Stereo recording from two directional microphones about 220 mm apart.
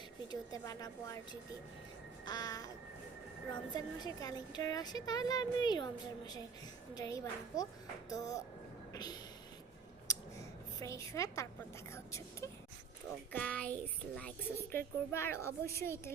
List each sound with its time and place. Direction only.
0.6 s a woman's voice: 15° left (ahead or behind)
2.2 s a woman's voice: 15° left (ahead or behind)
10.1 s a sound: 15° left (ahead or behind)
11.9 s a woman's voice: 10° left (ahead or behind)